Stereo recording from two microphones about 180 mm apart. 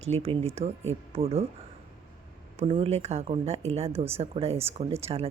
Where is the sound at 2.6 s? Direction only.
35° right (ahead or behind).